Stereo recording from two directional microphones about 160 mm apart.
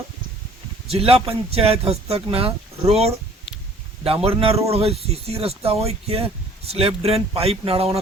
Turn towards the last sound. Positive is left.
turn(degrees=-35)  # may be behind; listen again after turning